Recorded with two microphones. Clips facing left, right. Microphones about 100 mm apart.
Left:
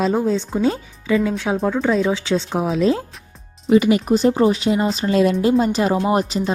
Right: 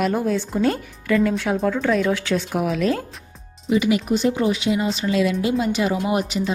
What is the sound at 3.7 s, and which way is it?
Speech, 45° left (ahead or behind).